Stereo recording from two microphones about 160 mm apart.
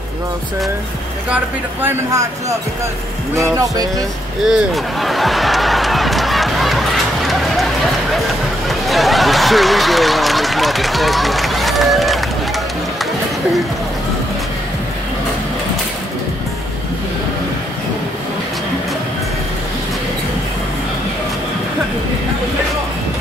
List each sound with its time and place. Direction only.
1.3 s speech: 10° right (ahead or behind)
3.3 s speech: 20° right (ahead or behind)
4.5 s a sound: centre (ahead or behind)
8.6 s speech: centre (ahead or behind)